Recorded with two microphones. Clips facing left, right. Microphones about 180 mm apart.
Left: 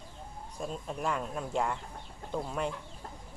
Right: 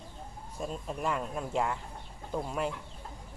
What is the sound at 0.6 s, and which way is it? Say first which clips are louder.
Speech: right 1 dB; centre (ahead or behind).